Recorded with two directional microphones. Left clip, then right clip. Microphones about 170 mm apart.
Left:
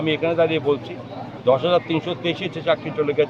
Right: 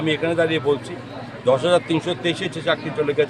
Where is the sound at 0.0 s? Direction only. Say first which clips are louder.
Left 1 dB; 25° right (ahead or behind).